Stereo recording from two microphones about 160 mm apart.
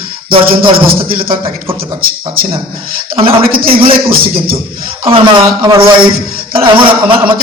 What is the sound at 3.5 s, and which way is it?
Speech, 65° right (ahead or behind).